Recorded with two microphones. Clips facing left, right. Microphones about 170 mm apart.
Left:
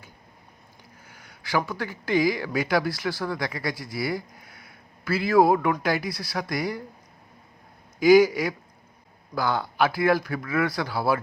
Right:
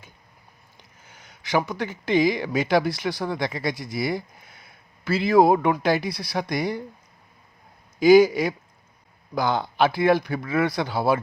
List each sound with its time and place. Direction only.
1.0 s speech: 20° right (ahead or behind)
7.9 s speech: 25° right (ahead or behind)